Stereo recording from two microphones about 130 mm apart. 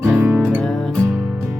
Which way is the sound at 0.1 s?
10° right (ahead or behind).